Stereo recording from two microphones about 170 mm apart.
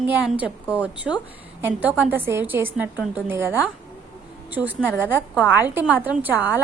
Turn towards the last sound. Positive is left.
turn(degrees=-10)  # may be behind; listen again after turning